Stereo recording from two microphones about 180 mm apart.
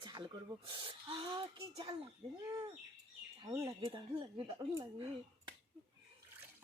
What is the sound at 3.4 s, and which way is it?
Speech, 15° right (ahead or behind).